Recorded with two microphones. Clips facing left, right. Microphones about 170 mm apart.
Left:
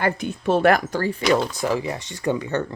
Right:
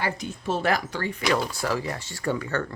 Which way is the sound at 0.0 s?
60° left (ahead or behind).